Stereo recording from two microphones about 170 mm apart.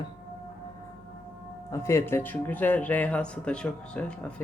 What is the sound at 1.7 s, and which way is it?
Speech, 15° left (ahead or behind).